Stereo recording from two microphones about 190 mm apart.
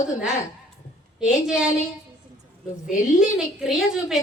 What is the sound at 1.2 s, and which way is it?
Speech, 5° right (ahead or behind).